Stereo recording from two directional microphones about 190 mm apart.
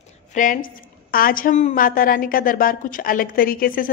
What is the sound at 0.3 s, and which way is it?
A woman's voice, 45° left (ahead or behind).